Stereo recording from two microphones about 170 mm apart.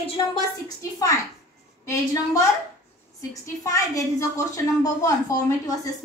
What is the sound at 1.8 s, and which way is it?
A woman's voice, 20° left (ahead or behind).